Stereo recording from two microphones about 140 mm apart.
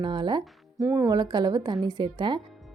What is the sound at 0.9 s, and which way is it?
Speech, 20° right (ahead or behind).